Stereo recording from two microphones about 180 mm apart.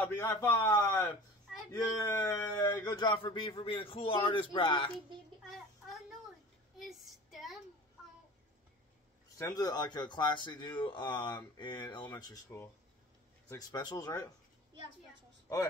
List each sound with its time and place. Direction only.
0.0 s speech: 20° left (ahead or behind)
5.5 s a sound: centre (ahead or behind)
6.8 s child singing: centre (ahead or behind)
9.4 s speech: 20° left (ahead or behind)